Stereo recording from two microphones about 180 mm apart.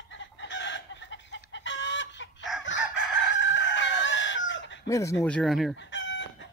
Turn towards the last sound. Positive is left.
turn(degrees=80)